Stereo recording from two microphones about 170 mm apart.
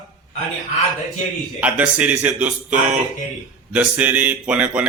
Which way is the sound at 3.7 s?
5° right (ahead or behind).